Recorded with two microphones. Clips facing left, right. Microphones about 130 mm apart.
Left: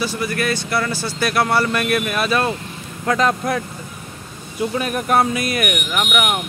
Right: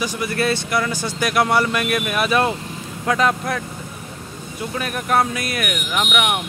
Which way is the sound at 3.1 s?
5° right (ahead or behind).